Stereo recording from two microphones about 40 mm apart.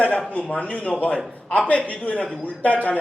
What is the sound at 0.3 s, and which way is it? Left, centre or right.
A man's voice, left.